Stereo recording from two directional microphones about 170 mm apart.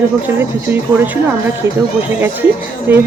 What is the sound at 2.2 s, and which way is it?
Speech, 10° right (ahead or behind).